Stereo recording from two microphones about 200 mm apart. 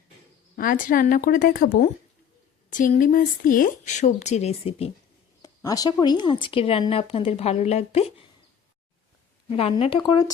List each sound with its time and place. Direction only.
0.5 s a woman's voice: 45° left (ahead or behind)
5.4 s speech: 20° left (ahead or behind)
9.5 s speech: 30° left (ahead or behind)